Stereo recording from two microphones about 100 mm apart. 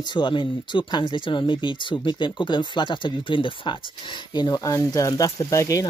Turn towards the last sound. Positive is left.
turn(degrees=35)  # may be behind; listen again after turning